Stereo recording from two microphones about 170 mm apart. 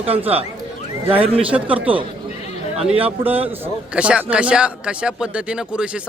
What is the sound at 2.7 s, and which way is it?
Speech, 35° right (ahead or behind).